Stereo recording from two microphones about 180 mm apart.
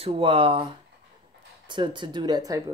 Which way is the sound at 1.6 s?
25° right (ahead or behind).